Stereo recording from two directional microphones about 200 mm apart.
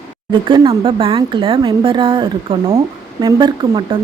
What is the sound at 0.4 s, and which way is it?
A woman's voice, 25° right (ahead or behind).